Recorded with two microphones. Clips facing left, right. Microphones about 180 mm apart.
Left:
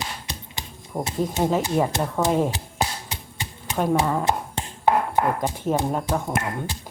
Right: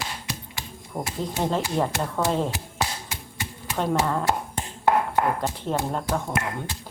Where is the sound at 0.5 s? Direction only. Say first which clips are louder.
Left 5 dB; 20° left (ahead or behind).